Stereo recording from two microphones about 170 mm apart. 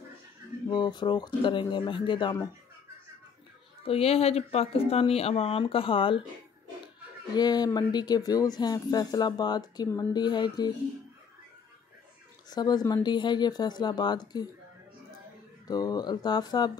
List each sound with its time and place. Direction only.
0.7 s speech: 25° left (ahead or behind)
3.8 s speech: 35° left (ahead or behind)
7.3 s speech: 25° left (ahead or behind)
12.4 s speech: 25° left (ahead or behind)
15.6 s speech: 20° left (ahead or behind)